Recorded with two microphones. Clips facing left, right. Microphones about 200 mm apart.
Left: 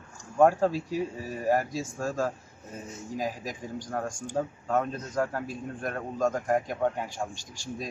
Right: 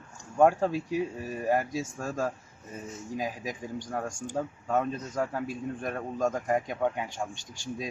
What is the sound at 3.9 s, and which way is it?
A man's voice, centre (ahead or behind).